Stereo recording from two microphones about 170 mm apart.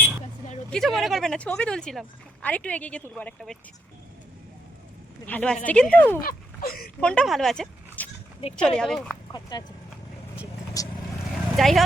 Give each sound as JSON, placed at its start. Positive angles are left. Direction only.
{"t": 0.7, "sound": "a woman's voice", "side_deg": 0}
{"t": 5.2, "sound": "speech", "side_deg": 10}
{"t": 6.2, "sound": "a sound", "side_deg": 60}
{"t": 7.0, "sound": "a woman's voice", "side_deg": 5}
{"t": 9.3, "sound": "speech", "side_deg": 25}
{"t": 10.8, "sound": "vehicle", "side_deg": 20}
{"t": 11.5, "sound": "a woman's voice", "side_deg": 0}